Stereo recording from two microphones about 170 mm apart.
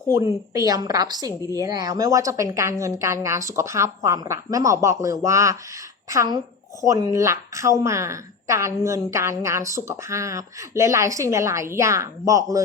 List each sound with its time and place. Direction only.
0.1 s a woman's voice: 20° right (ahead or behind)